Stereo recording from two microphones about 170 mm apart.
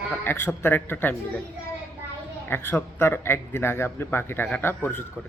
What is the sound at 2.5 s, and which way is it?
Speech, 15° left (ahead or behind).